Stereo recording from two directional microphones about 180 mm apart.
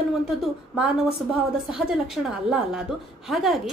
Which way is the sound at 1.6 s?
5° right (ahead or behind).